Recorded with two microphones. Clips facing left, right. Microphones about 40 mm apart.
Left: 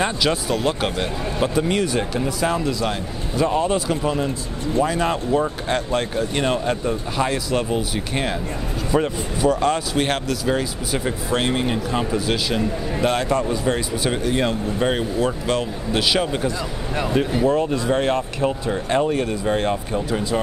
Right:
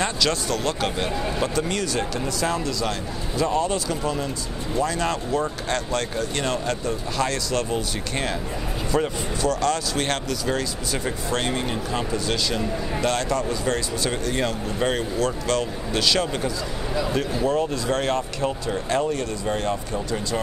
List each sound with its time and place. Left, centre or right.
0.0 s speech: centre